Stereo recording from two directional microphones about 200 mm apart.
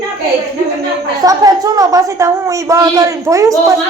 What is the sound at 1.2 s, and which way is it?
A woman's voice, 20° right (ahead or behind).